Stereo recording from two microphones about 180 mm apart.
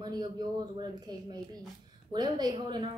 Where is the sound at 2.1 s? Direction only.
20° right (ahead or behind).